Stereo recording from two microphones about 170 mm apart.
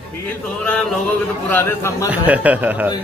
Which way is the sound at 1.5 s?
15° left (ahead or behind).